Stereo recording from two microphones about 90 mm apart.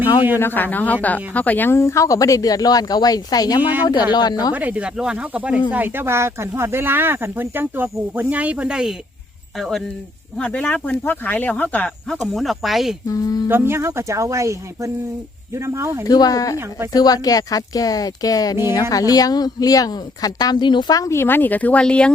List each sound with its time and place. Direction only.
0.3 s a woman's voice: 25° left (ahead or behind); by 4.5 s 50° left (ahead or behind)
4.5 s speech: 15° right (ahead or behind); by 9.8 s centre (ahead or behind)
10.3 s speech: 10° left (ahead or behind)
12.1 s speech: centre (ahead or behind)
13.1 s a woman's voice: 45° left (ahead or behind)
13.5 s speech: 30° right (ahead or behind)
16.0 s a woman's voice: 45° left (ahead or behind)
21.0 s a woman's voice: 30° left (ahead or behind); by 22.1 s 10° left (ahead or behind)